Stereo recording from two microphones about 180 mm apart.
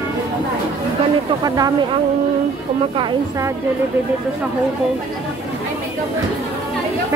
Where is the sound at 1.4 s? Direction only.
20° right (ahead or behind).